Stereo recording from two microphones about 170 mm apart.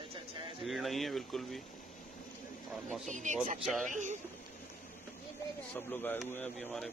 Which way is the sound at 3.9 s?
45° right (ahead or behind).